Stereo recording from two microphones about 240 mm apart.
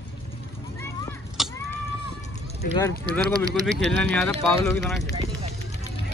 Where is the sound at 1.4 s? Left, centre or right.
Centre.